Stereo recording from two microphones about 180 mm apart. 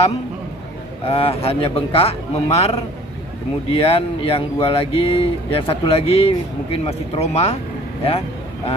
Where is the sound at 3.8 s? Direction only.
30° left (ahead or behind).